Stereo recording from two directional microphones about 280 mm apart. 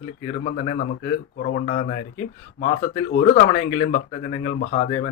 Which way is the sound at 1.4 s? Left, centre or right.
Left.